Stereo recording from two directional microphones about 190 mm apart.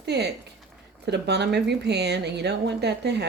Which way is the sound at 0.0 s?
60° right (ahead or behind).